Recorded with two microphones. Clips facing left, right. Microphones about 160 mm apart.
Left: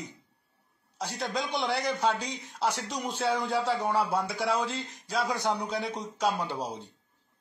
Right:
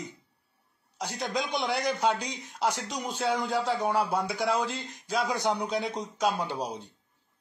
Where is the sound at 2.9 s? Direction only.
Centre (ahead or behind).